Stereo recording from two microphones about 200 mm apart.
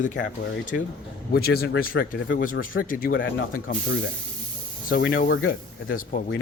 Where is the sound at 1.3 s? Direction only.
50° left (ahead or behind).